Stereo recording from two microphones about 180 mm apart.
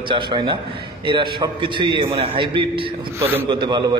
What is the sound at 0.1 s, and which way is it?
A man's voice, 25° right (ahead or behind).